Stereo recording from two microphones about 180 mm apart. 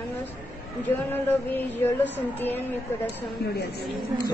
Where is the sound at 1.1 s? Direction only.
10° left (ahead or behind).